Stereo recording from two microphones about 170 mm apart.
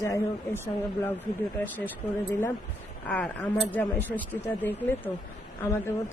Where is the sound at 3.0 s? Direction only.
10° left (ahead or behind).